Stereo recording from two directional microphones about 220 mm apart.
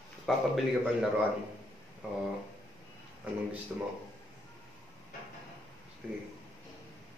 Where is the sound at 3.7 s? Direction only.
5° right (ahead or behind).